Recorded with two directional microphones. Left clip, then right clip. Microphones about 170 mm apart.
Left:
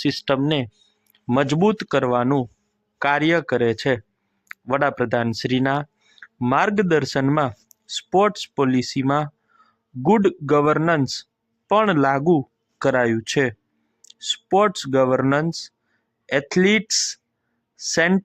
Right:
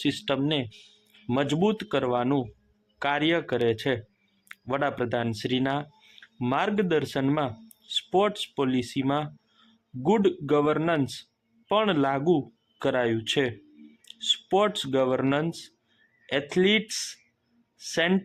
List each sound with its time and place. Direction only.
0.0 s speech: 40° left (ahead or behind)